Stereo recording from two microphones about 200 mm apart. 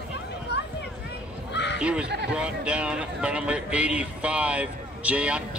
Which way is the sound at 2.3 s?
5° right (ahead or behind).